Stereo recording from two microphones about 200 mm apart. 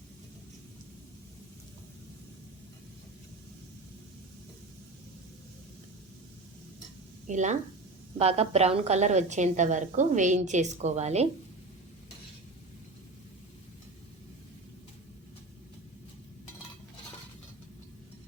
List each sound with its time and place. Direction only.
7.3 s a woman's voice: 35° right (ahead or behind)